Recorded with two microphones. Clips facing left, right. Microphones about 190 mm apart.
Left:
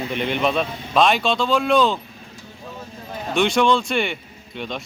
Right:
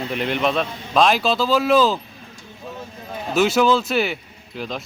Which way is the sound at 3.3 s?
5° right (ahead or behind).